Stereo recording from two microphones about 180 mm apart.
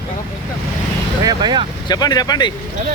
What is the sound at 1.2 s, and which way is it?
Speech, 25° right (ahead or behind).